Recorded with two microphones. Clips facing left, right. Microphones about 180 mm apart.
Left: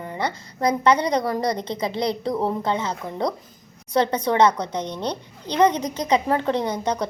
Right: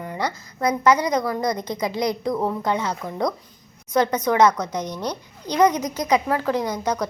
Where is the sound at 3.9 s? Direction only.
30° left (ahead or behind).